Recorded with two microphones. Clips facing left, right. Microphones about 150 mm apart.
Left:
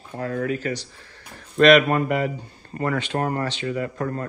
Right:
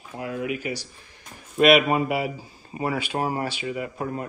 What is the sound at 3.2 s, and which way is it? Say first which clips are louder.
Speech: left 2 dB; 55° left (ahead or behind).